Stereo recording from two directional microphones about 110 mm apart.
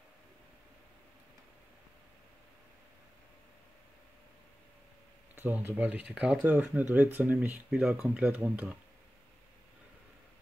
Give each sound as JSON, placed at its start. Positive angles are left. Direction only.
{"t": 5.3, "sound": "speech", "side_deg": -20}